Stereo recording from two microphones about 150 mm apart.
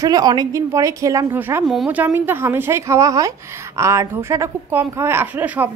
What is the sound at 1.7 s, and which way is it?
A woman's voice, 5° right (ahead or behind).